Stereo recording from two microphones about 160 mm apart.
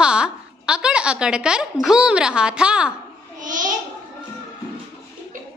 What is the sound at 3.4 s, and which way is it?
Babbling, 55° right (ahead or behind).